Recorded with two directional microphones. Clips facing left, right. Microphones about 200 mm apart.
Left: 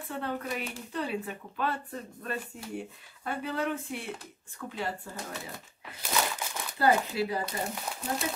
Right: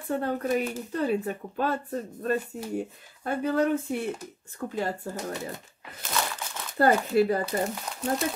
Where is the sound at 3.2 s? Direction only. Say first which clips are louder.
Right 7 dB; 45° right (ahead or behind).